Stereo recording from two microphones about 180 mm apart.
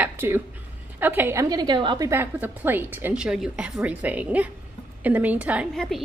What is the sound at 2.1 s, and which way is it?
A woman's voice, 10° right (ahead or behind).